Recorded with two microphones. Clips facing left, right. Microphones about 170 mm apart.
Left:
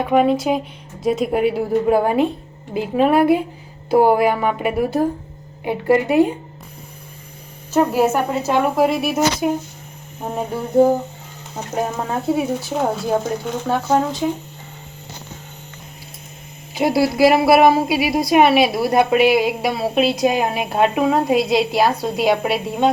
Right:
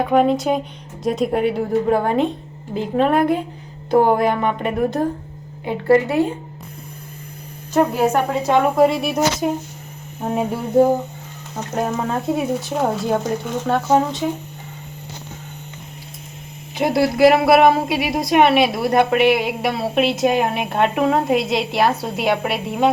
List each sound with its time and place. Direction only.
0.1 s a woman's voice: 5° left (ahead or behind)
7.7 s a woman's voice: 5° left (ahead or behind)
16.7 s a woman's voice: 5° left (ahead or behind)